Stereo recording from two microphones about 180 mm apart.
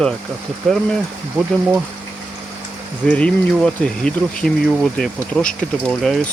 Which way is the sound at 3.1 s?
5° left (ahead or behind).